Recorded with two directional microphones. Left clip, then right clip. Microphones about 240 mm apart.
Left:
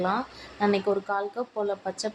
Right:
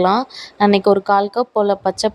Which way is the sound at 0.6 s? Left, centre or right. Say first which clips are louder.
Right 11 dB; right.